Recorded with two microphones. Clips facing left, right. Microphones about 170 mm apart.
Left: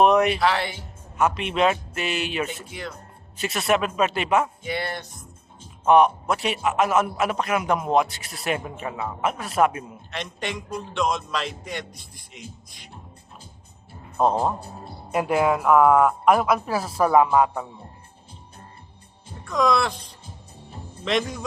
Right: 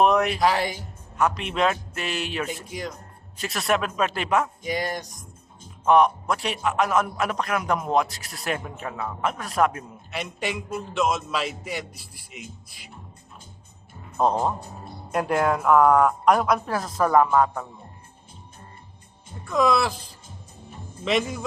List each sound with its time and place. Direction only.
0.0 s music: centre (ahead or behind)
0.4 s speech: 40° right (ahead or behind)
1.1 s a man's voice: centre (ahead or behind)
5.8 s a man's voice: 5° left (ahead or behind)
10.1 s a man's voice: 5° right (ahead or behind)
14.2 s a man's voice: centre (ahead or behind)
19.5 s a man's voice: 5° right (ahead or behind)